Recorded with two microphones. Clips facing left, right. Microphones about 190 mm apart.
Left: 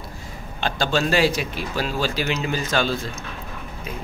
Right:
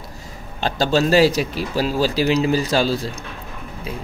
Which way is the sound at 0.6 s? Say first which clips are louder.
Right 4 dB; 40° right (ahead or behind).